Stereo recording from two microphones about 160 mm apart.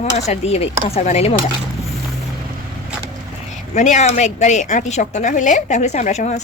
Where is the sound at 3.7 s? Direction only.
50° left (ahead or behind).